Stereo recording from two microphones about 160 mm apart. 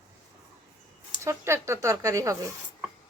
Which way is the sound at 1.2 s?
15° right (ahead or behind).